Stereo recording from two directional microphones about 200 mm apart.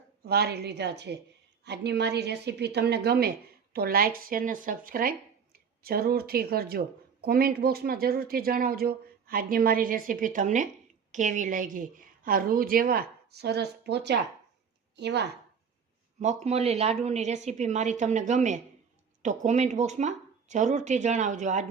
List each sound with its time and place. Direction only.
0.3 s a woman's voice: 55° right (ahead or behind)
16.2 s speech: 35° right (ahead or behind)